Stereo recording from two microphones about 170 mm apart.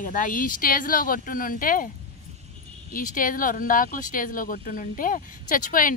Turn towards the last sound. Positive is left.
turn(degrees=50)  # may be behind; listen again after turning